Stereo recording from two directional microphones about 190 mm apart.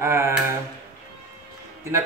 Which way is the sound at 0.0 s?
15° right (ahead or behind).